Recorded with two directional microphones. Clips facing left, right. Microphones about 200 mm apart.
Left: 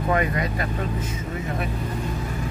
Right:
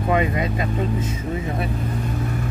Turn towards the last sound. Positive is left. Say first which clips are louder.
# right 3 dB
turn(degrees=-20)  # may be behind; listen again after turning